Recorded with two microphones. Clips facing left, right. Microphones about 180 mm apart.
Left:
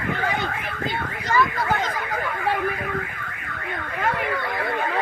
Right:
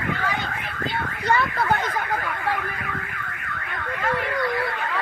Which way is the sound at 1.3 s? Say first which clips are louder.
Even; 60° right (ahead or behind).